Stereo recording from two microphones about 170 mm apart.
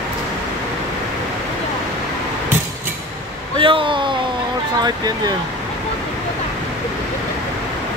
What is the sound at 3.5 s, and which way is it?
Speech, 30° right (ahead or behind).